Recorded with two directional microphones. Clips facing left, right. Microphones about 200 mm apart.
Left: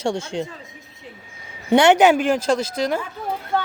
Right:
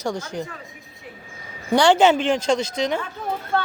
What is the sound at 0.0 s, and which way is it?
Speech, 25° left (ahead or behind).